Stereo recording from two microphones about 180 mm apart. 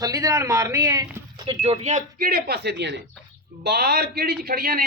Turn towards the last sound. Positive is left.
turn(degrees=-55)  # may be behind; listen again after turning